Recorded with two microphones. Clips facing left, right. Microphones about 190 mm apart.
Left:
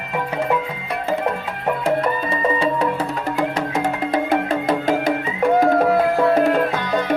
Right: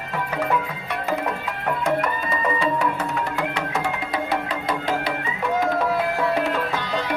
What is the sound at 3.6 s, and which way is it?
Music, 45° left (ahead or behind).